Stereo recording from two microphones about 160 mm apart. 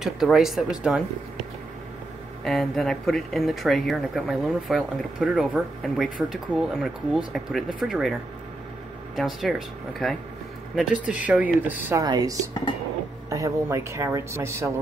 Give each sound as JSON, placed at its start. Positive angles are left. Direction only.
{"t": 0.0, "sound": "speech", "side_deg": 0}
{"t": 2.4, "sound": "speech", "side_deg": 0}
{"t": 12.0, "sound": "speech", "side_deg": -25}